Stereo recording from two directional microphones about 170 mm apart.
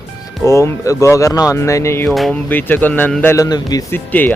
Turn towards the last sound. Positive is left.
turn(degrees=10)  # may be behind; listen again after turning